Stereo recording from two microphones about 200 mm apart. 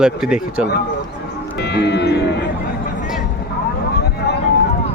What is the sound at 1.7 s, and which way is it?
Speech, 55° left (ahead or behind).